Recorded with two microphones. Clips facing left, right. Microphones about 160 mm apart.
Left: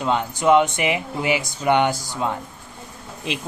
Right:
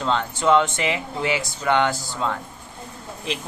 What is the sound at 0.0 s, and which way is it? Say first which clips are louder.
Speech: left 2 dB; 15° left (ahead or behind).